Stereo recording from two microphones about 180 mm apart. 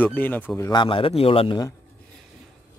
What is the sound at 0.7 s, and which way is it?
Speech, 30° left (ahead or behind).